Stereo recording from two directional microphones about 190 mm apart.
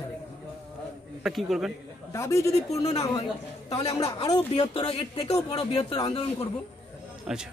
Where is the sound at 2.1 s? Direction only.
15° left (ahead or behind).